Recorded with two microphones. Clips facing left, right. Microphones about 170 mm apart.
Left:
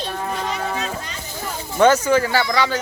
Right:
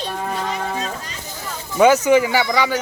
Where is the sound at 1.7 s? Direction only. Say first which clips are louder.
Right 2 dB; 10° right (ahead or behind).